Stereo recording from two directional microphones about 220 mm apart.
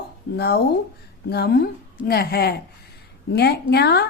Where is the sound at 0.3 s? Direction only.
50° left (ahead or behind).